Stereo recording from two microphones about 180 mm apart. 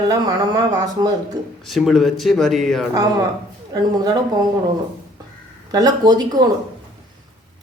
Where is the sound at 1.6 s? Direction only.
Centre (ahead or behind).